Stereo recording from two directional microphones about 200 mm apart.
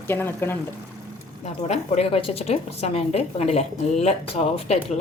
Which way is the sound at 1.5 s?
35° left (ahead or behind).